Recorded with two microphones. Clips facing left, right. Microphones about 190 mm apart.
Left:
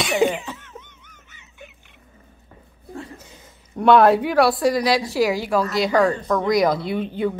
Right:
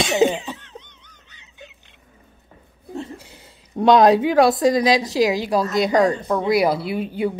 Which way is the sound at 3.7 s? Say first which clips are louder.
Right 1 dB; 15° right (ahead or behind).